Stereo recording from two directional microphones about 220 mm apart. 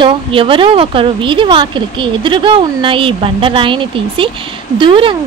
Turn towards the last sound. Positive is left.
turn(degrees=-25)  # may be behind; listen again after turning